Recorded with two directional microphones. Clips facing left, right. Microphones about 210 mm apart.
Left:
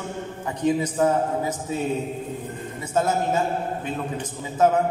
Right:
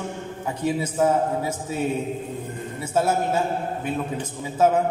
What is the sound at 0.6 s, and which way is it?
A man's voice, 10° right (ahead or behind).